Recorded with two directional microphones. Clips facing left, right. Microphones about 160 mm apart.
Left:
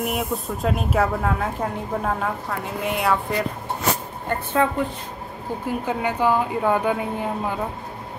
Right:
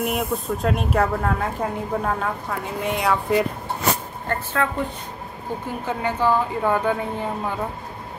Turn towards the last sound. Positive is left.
turn(degrees=10)  # may be behind; listen again after turning